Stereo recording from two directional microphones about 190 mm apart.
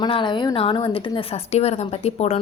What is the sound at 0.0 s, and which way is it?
A woman's voice, 25° left (ahead or behind).